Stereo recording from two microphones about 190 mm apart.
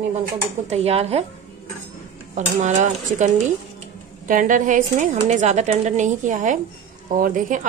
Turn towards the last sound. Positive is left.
turn(degrees=-45)  # may be behind; listen again after turning